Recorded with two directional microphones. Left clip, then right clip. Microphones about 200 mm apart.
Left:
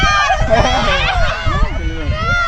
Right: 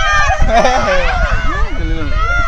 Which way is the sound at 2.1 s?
55° left (ahead or behind).